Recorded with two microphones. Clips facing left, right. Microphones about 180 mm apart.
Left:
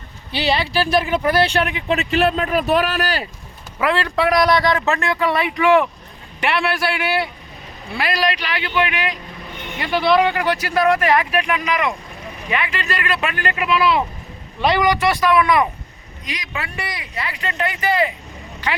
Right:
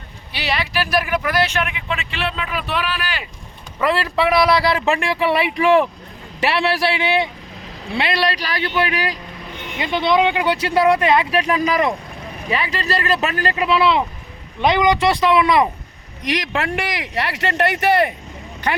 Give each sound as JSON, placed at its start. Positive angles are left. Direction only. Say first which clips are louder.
{"t": 0.3, "sound": "speech", "louder": "left 4 dB", "side_deg": 30}
{"t": 3.8, "sound": "speech", "louder": "even", "side_deg": 0}
{"t": 5.0, "sound": "speech", "louder": "right 1 dB", "side_deg": -30}
{"t": 9.7, "sound": "speech", "louder": "left 1 dB", "side_deg": -20}
{"t": 16.5, "sound": "speech", "louder": "right 6 dB", "side_deg": -90}